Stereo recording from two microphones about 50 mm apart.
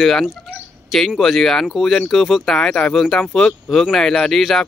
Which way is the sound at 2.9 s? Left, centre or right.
Centre.